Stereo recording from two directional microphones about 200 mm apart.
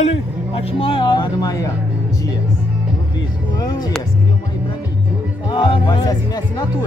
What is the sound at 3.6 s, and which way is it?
Music, 20° left (ahead or behind).